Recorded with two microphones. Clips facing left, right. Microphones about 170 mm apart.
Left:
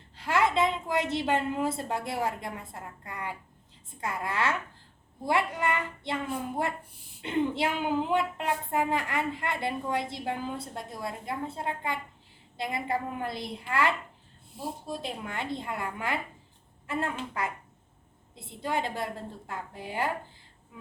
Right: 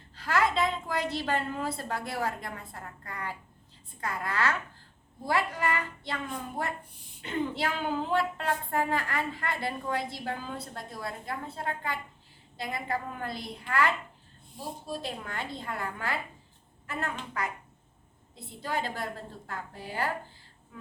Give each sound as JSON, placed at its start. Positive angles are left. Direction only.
{"t": 0.2, "sound": "a woman's voice", "side_deg": 25}
{"t": 7.2, "sound": "a woman's voice", "side_deg": 25}